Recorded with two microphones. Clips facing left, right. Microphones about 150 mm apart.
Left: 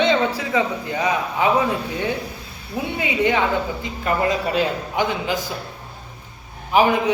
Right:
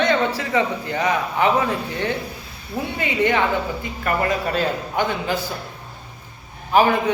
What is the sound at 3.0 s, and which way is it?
A woman's voice, 15° left (ahead or behind).